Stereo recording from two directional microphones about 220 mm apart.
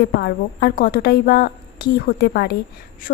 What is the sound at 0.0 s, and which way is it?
A woman's voice, 50° left (ahead or behind).